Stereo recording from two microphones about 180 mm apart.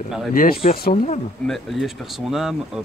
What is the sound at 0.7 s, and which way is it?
Speech, 55° left (ahead or behind).